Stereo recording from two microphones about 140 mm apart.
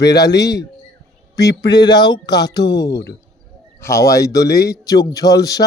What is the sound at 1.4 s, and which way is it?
Speech, 25° left (ahead or behind).